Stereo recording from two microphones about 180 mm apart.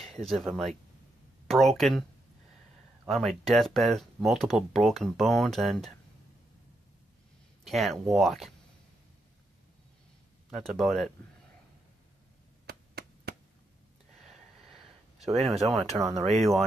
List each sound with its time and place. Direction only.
0.2 s speech: centre (ahead or behind)
3.1 s speech: centre (ahead or behind)
7.6 s speech: centre (ahead or behind)
10.5 s speech: centre (ahead or behind)
12.6 s chop: 60° right (ahead or behind)
14.2 s a sound: centre (ahead or behind)
15.6 s speech: centre (ahead or behind)